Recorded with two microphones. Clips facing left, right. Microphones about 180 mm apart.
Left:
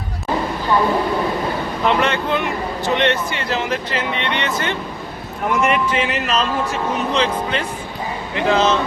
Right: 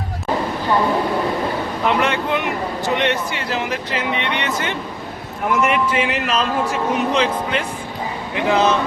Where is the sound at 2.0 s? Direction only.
10° right (ahead or behind).